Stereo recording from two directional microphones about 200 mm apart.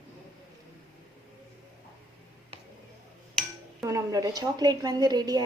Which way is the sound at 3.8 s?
15° right (ahead or behind).